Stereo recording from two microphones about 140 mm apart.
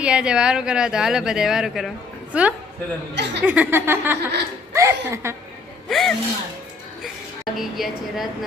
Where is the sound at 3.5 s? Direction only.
15° right (ahead or behind).